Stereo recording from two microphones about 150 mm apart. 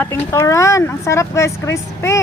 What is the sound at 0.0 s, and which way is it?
Speech, 20° left (ahead or behind).